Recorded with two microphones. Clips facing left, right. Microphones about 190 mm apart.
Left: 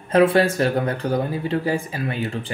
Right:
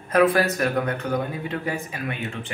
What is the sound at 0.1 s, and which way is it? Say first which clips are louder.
Speech: left 3 dB; 25° left (ahead or behind).